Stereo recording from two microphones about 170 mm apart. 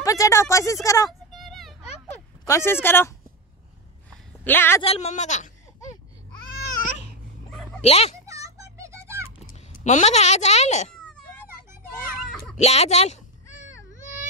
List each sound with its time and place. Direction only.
0.0 s speech: 20° left (ahead or behind)
1.3 s children playing: centre (ahead or behind)
2.4 s speech: 15° left (ahead or behind)
4.1 s a sound: 10° left (ahead or behind)
4.8 s speech: 40° left (ahead or behind)
7.8 s speech: 40° left (ahead or behind)
8.3 s music: 20° right (ahead or behind)
9.8 s speech: 45° left (ahead or behind)
12.5 s a sound: 40° left (ahead or behind)